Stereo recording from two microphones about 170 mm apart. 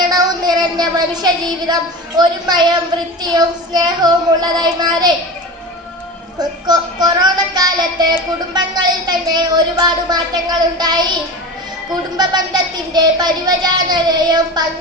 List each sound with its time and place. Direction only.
0.1 s a sound: 25° right (ahead or behind)
3.2 s a woman's voice: 25° right (ahead or behind)
6.4 s a woman's voice: 25° right (ahead or behind)
12.1 s a woman's voice: 25° right (ahead or behind)